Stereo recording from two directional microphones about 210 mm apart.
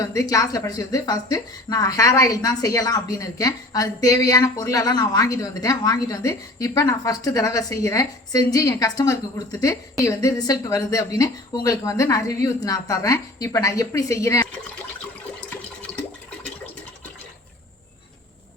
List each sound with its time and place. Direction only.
0.0 s speech: 15° left (ahead or behind)